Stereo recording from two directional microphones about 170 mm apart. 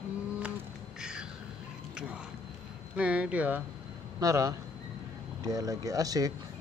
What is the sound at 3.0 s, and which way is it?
Speech, 10° right (ahead or behind).